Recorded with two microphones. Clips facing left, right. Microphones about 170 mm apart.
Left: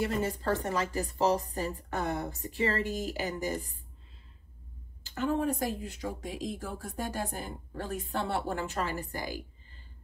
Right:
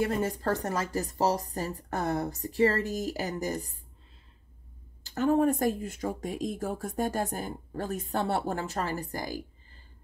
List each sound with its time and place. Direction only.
0.0 s a woman's voice: 45° right (ahead or behind)
5.0 s a woman's voice: 45° right (ahead or behind)